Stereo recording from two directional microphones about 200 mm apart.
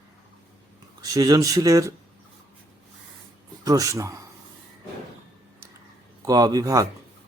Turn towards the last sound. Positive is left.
turn(degrees=-15)  # may be behind; listen again after turning